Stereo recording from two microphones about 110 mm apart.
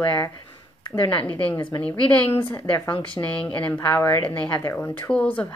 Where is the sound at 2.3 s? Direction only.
20° left (ahead or behind).